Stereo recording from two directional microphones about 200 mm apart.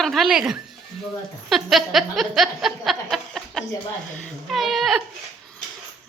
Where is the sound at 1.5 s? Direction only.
Centre (ahead or behind).